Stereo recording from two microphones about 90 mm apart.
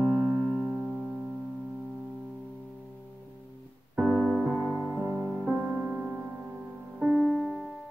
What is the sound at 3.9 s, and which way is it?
Music, 10° right (ahead or behind).